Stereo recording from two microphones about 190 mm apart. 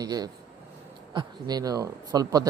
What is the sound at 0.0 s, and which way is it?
A man's voice, 20° right (ahead or behind).